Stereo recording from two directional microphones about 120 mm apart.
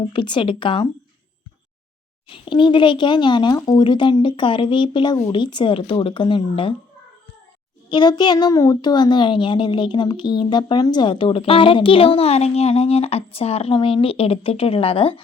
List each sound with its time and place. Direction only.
0.1 s speech: 40° left (ahead or behind)
2.3 s speech: 45° left (ahead or behind)
7.9 s speech: 40° left (ahead or behind)